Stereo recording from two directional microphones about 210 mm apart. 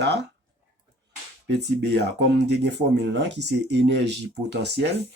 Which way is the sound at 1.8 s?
55° right (ahead or behind).